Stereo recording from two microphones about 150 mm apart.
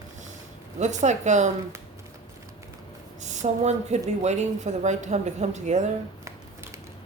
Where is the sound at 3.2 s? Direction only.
50° right (ahead or behind).